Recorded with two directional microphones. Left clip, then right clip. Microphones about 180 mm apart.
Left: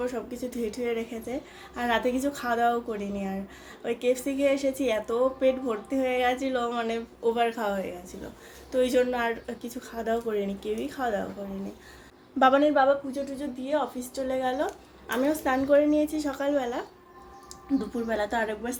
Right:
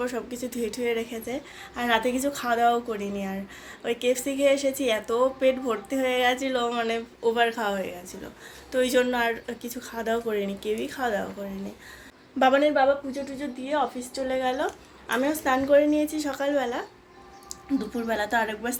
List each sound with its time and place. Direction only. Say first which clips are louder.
0.0 s a woman's voice: right 1 dB; 5° left (ahead or behind)
12.4 s a woman's voice: even; centre (ahead or behind)
13.1 s a woman's voice: even; 25° right (ahead or behind)
14.3 s a woman's voice: right 2 dB; 5° right (ahead or behind)